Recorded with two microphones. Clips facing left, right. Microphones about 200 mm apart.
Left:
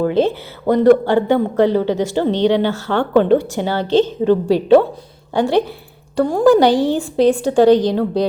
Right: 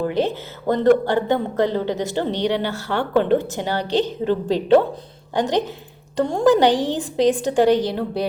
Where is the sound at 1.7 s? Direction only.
20° right (ahead or behind).